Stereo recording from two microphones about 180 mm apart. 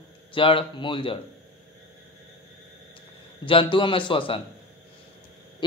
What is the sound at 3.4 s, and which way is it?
Speech, 30° left (ahead or behind).